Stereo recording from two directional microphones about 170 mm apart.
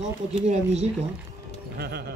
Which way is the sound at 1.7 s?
70° right (ahead or behind).